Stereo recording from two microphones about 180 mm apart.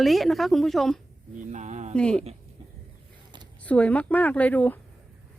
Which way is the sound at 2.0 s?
5° left (ahead or behind).